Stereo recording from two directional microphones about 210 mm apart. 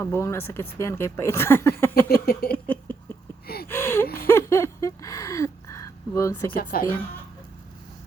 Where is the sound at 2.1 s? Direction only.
45° left (ahead or behind).